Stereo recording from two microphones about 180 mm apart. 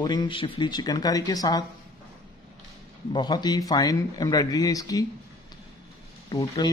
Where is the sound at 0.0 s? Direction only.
25° left (ahead or behind).